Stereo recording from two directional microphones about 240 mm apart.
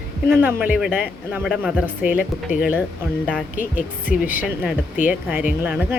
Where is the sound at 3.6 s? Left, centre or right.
Left.